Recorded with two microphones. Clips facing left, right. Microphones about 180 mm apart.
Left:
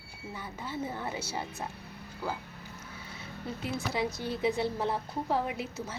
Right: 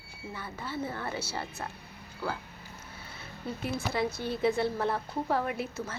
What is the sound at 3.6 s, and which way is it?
A woman's voice, 15° left (ahead or behind).